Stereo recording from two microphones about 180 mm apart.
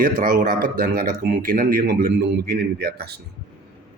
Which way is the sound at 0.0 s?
50° right (ahead or behind).